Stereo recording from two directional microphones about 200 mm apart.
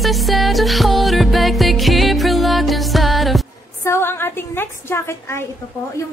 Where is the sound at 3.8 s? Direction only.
10° left (ahead or behind).